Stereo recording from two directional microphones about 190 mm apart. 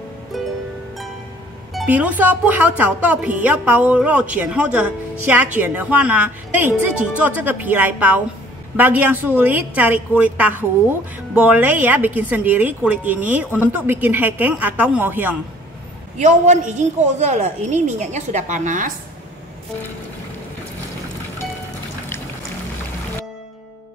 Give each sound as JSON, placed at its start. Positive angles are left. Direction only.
{"t": 0.3, "sound": "music", "side_deg": 0}
{"t": 1.7, "sound": "a woman's voice", "side_deg": -5}
{"t": 16.2, "sound": "a woman's voice", "side_deg": -40}